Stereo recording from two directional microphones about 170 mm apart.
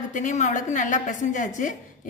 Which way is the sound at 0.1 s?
45° left (ahead or behind).